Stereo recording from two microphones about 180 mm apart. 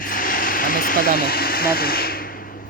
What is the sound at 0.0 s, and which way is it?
Vehicle, 50° left (ahead or behind).